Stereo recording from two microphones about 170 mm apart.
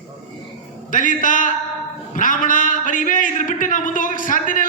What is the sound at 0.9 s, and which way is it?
A man's voice, 50° left (ahead or behind).